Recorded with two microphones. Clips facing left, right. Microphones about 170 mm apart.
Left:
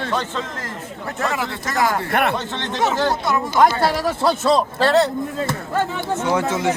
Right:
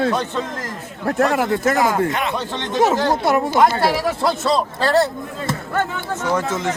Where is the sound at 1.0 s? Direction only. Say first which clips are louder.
Right 7 dB; 50° right (ahead or behind).